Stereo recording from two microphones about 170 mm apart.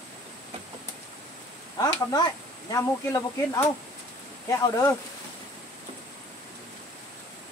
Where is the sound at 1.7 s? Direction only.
20° left (ahead or behind).